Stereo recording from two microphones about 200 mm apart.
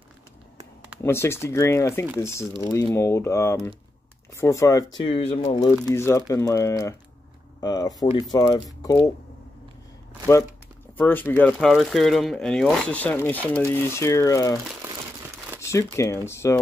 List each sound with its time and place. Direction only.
1.0 s speech: 10° left (ahead or behind)
5.0 s speech: 25° left (ahead or behind)
5.9 s speech: 15° left (ahead or behind)
11.0 s speech: 10° left (ahead or behind)
15.6 s speech: 15° left (ahead or behind)